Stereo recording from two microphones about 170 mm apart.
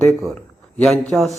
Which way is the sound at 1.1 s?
Centre (ahead or behind).